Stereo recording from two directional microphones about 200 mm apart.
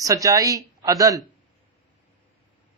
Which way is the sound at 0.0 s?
15° right (ahead or behind).